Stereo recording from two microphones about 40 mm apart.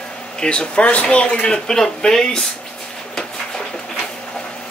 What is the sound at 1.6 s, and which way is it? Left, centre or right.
Speech, centre.